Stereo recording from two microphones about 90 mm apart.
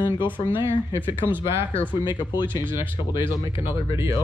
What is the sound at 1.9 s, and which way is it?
Speech, 55° left (ahead or behind).